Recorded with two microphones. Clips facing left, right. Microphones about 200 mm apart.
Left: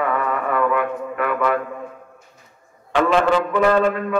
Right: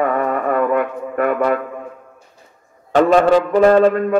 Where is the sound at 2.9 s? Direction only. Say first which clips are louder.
Right 5 dB; 40° right (ahead or behind).